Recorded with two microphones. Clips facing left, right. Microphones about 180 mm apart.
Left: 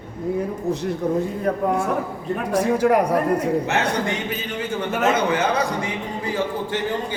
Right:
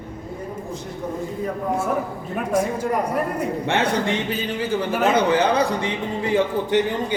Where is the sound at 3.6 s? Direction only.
30° right (ahead or behind).